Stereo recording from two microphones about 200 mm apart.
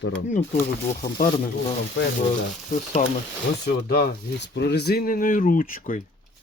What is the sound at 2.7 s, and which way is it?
Speech, 35° left (ahead or behind).